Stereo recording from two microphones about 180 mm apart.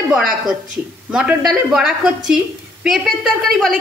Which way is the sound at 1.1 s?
5° right (ahead or behind).